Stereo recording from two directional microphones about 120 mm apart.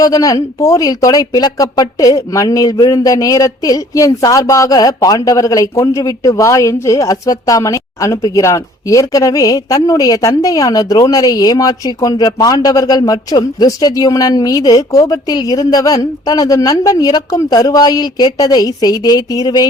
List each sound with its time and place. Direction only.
0.0 s speech: 30° left (ahead or behind)